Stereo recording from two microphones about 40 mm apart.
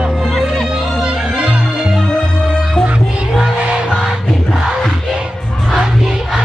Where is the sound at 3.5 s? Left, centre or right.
Right.